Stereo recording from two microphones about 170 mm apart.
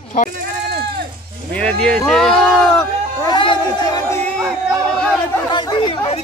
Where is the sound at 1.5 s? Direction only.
5° left (ahead or behind).